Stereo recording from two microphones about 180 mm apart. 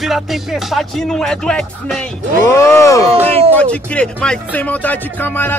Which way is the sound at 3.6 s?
5° left (ahead or behind).